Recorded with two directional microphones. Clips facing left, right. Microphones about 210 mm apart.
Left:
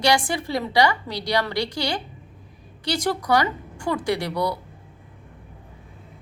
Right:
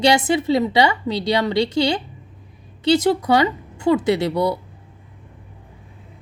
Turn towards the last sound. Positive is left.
turn(degrees=-25)  # may be behind; listen again after turning